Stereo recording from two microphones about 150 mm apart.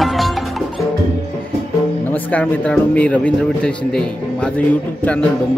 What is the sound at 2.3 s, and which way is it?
Speech, 10° left (ahead or behind).